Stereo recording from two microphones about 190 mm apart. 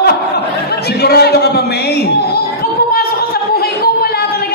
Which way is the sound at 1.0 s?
55° left (ahead or behind).